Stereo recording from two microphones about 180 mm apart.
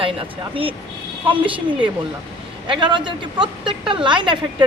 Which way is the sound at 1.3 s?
30° right (ahead or behind).